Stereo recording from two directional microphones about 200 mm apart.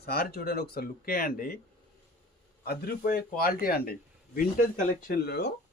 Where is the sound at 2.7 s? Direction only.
50° left (ahead or behind).